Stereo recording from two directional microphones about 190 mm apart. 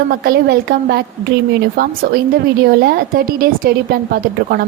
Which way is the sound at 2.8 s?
55° right (ahead or behind).